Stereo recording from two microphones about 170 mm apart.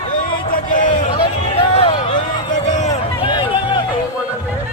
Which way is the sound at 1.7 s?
35° left (ahead or behind).